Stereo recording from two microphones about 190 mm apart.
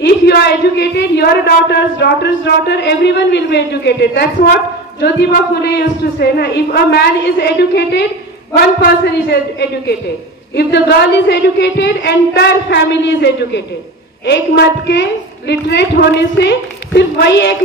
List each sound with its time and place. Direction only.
0.0 s a man's voice: 60° left (ahead or behind)